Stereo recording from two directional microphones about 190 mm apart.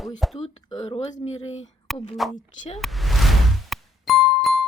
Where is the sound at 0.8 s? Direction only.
35° left (ahead or behind).